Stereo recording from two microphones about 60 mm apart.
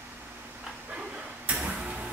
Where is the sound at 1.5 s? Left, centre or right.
Centre.